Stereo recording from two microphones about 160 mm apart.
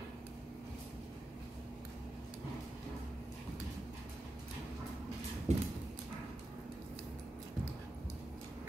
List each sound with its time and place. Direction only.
5.5 s clip-clop: 45° right (ahead or behind)